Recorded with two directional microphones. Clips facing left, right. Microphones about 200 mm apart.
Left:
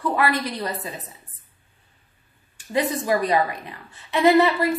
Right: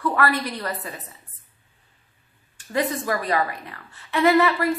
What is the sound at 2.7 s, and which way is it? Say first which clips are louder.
A woman's voice: left 2 dB; 15° left (ahead or behind).